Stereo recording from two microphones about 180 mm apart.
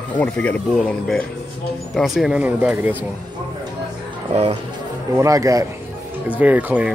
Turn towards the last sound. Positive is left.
turn(degrees=-10)  # may be behind; listen again after turning